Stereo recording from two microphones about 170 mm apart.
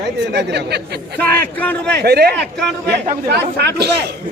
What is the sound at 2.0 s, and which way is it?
Speech, 70° right (ahead or behind).